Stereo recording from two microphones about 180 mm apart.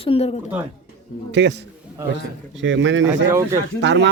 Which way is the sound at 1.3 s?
75° right (ahead or behind).